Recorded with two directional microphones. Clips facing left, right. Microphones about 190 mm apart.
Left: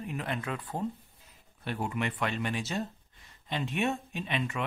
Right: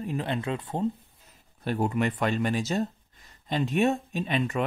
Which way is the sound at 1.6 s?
40° right (ahead or behind).